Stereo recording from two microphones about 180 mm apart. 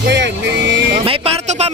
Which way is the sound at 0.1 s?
80° right.